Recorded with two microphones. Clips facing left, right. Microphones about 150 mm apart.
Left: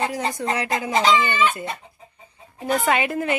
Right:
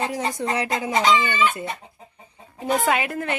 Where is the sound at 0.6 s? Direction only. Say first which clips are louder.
Left 1 dB; 25° right (ahead or behind).